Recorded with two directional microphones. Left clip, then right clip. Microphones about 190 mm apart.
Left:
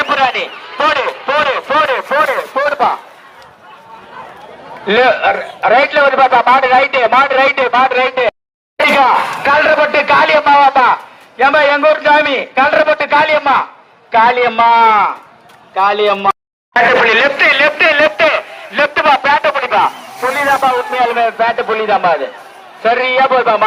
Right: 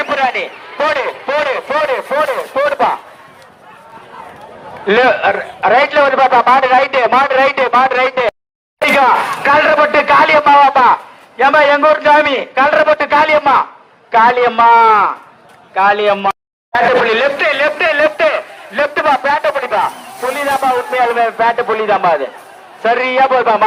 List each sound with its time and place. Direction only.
0.0 s speech: centre (ahead or behind)
2.6 s speech: 50° right (ahead or behind)
4.9 s speech: 35° right (ahead or behind)
8.8 s speech: 50° right (ahead or behind)
16.7 s speech: centre (ahead or behind)
20.3 s a man's voice: 20° right (ahead or behind)
20.6 s a man's voice: 45° right (ahead or behind); by 23.6 s 25° right (ahead or behind)